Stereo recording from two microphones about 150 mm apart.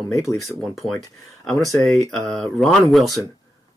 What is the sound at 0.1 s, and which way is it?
Speech, 20° left (ahead or behind).